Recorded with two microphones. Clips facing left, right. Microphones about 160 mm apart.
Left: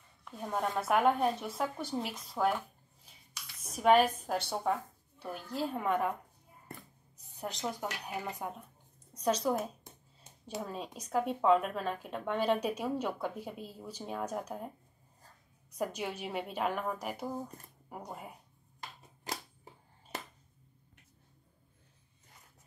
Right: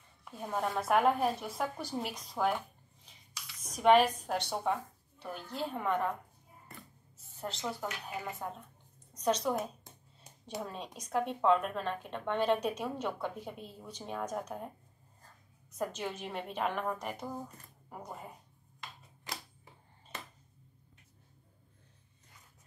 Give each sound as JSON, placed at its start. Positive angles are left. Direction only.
{"t": 0.2, "sound": "speech", "side_deg": 0}
{"t": 3.6, "sound": "a woman's voice", "side_deg": 5}
{"t": 7.3, "sound": "a woman's voice", "side_deg": 15}
{"t": 15.8, "sound": "speech", "side_deg": 10}